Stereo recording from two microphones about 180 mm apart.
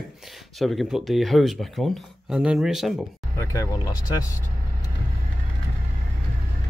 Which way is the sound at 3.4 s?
15° left (ahead or behind).